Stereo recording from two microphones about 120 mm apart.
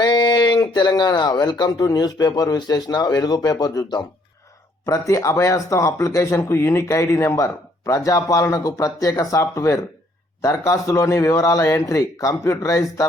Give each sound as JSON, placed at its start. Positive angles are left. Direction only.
{"t": 0.0, "sound": "speech", "side_deg": 35}